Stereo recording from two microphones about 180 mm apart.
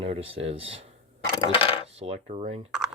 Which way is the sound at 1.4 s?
30° left (ahead or behind).